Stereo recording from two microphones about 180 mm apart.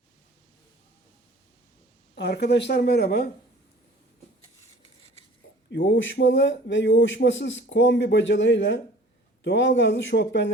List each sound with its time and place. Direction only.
2.1 s speech: 70° left (ahead or behind)
5.7 s speech: 85° left